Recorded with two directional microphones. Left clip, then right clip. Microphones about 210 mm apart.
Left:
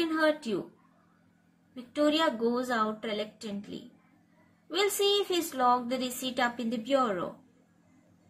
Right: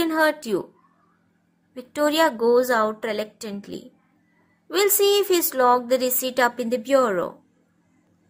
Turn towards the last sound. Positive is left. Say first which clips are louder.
# right 9 dB
turn(degrees=-55)  # may be behind; listen again after turning